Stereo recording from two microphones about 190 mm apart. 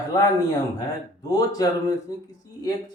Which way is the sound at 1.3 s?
20° left (ahead or behind).